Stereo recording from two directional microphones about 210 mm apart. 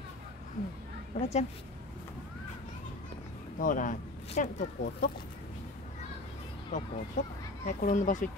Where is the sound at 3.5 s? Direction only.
40° left (ahead or behind).